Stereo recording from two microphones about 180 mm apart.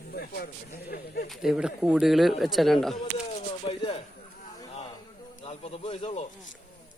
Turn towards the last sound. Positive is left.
turn(degrees=35)  # may be behind; listen again after turning